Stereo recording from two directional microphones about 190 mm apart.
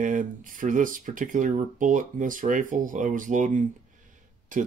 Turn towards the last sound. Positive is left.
turn(degrees=-45)  # may be behind; listen again after turning